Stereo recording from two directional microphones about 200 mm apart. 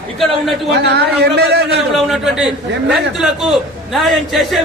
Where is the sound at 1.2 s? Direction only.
55° right (ahead or behind).